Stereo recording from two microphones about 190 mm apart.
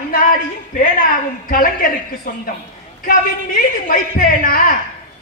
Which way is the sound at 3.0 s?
50° left (ahead or behind).